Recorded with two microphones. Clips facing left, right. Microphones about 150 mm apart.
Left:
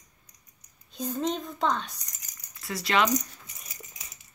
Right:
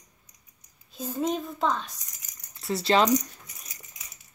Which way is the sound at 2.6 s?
30° right (ahead or behind).